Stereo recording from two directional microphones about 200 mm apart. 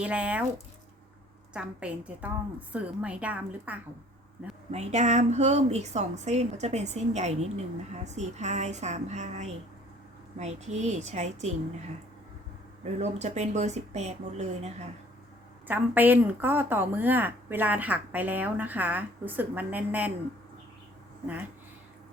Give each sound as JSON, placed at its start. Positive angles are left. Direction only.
{"t": 0.0, "sound": "speech", "side_deg": -5}
{"t": 1.5, "sound": "speech", "side_deg": -5}
{"t": 4.7, "sound": "a woman's voice", "side_deg": -35}
{"t": 12.8, "sound": "a woman's voice", "side_deg": -35}
{"t": 15.6, "sound": "speech", "side_deg": -10}